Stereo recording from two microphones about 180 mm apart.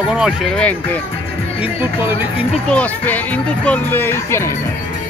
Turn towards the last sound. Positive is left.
turn(degrees=15)  # may be behind; listen again after turning